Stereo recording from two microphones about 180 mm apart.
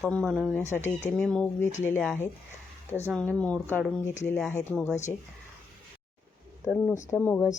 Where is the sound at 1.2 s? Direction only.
5° left (ahead or behind).